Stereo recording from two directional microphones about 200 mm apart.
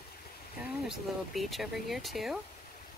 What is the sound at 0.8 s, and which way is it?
Speech, centre (ahead or behind).